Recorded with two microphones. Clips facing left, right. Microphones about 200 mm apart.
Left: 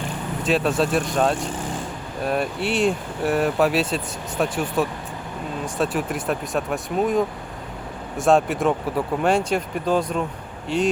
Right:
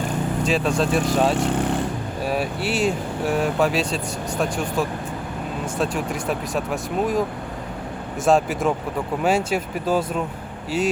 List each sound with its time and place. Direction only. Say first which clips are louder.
0.4 s speech: left 2 dB; centre (ahead or behind)
1.5 s speech: right 7 dB; 65° right (ahead or behind)
2.2 s speech: left 1 dB; 5° right (ahead or behind)
8.2 s speech: left 1 dB; centre (ahead or behind)